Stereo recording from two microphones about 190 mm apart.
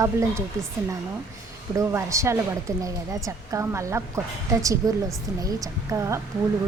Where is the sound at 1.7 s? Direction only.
15° right (ahead or behind).